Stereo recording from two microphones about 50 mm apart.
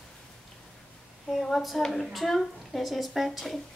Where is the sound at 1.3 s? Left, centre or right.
Centre.